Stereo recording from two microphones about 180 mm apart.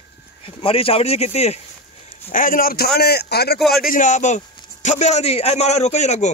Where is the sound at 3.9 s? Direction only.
45° left (ahead or behind).